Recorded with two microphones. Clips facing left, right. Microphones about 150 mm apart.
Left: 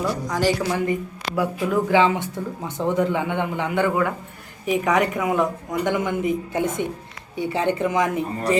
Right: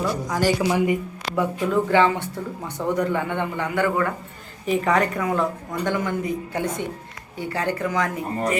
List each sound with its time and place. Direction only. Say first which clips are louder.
0.0 s speech: even; centre (ahead or behind)
0.6 s a man's voice: right 2 dB; 15° right (ahead or behind)
1.4 s speech: even; 5° left (ahead or behind)